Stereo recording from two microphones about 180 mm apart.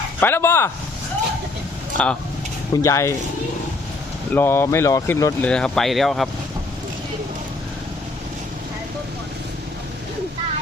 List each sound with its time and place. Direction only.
0.2 s speech: 10° left (ahead or behind)
2.0 s speech: 5° left (ahead or behind)
2.7 s speech: 15° left (ahead or behind)
4.4 s speech: 15° left (ahead or behind)